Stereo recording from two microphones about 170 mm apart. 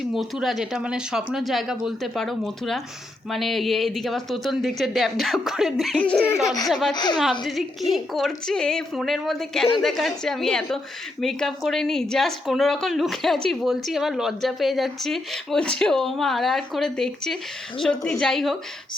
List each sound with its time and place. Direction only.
0.1 s a woman's voice: centre (ahead or behind)
6.9 s speech: 25° left (ahead or behind)
7.2 s a woman's voice: centre (ahead or behind)